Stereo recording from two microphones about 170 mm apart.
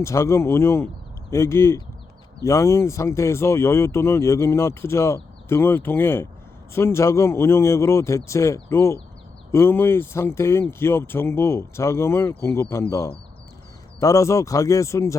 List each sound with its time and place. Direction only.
0.0 s speech: 15° left (ahead or behind)